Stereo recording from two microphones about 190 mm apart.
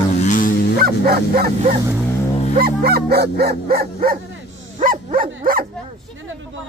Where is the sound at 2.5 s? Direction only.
50° right (ahead or behind).